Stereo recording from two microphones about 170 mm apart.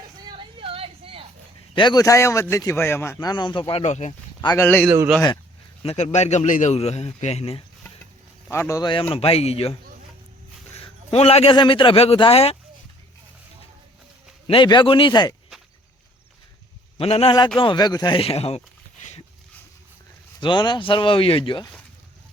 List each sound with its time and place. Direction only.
0.3 s a sound: 30° right (ahead or behind)
1.7 s a man's voice: 25° left (ahead or behind); by 4.1 s 40° left (ahead or behind)
4.4 s speech: 20° left (ahead or behind)
5.8 s speech: 40° left (ahead or behind)
8.4 s speech: 15° left (ahead or behind); by 9.7 s 35° left (ahead or behind)
10.8 s speech: 35° left (ahead or behind)
14.4 s a man's voice: 30° left (ahead or behind)
17.0 s speech: 35° left (ahead or behind)
20.4 s a man's voice: 30° left (ahead or behind)